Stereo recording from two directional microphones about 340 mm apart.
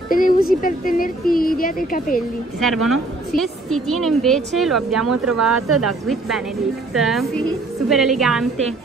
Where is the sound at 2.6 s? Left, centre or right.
Centre.